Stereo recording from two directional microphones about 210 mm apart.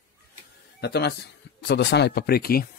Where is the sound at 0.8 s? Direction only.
50° left (ahead or behind).